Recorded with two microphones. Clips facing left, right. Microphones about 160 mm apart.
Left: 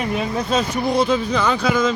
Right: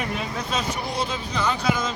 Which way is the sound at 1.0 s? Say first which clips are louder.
Left 8 dB; 70° left (ahead or behind).